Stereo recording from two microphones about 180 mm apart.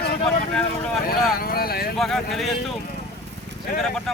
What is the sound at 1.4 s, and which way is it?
Speech, 55° left (ahead or behind).